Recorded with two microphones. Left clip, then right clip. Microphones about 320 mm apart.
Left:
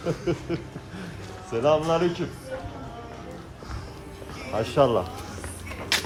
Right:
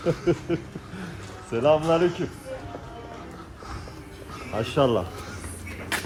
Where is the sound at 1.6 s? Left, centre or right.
Right.